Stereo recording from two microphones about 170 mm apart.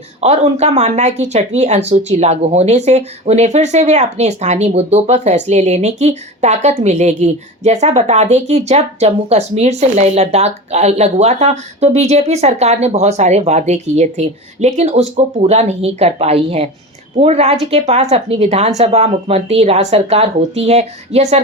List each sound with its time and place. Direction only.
0.2 s speech: 40° right (ahead or behind)